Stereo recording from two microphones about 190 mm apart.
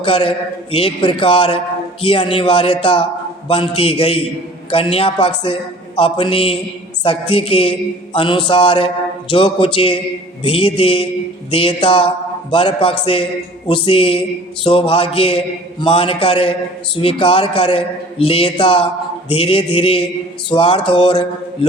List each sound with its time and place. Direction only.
0.0 s a man's voice: 30° left (ahead or behind)